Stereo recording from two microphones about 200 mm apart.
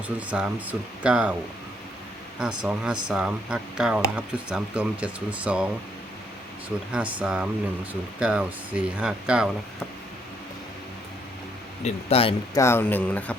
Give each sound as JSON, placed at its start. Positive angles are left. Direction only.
{"t": 0.2, "sound": "speech", "side_deg": -5}
{"t": 2.6, "sound": "speech", "side_deg": -5}
{"t": 6.9, "sound": "speech", "side_deg": -5}
{"t": 11.8, "sound": "a man's voice", "side_deg": 30}
{"t": 12.5, "sound": "speech", "side_deg": 10}